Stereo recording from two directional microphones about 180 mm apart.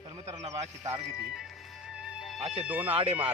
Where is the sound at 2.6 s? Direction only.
10° right (ahead or behind).